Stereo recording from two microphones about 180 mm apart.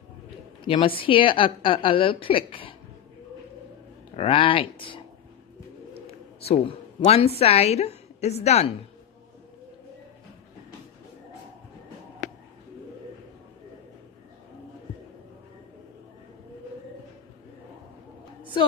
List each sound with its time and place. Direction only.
0.7 s a woman's voice: 30° left (ahead or behind)
4.2 s a woman's voice: 30° left (ahead or behind)
6.0 s a woman's voice: 35° left (ahead or behind)
18.4 s a sound: 30° left (ahead or behind)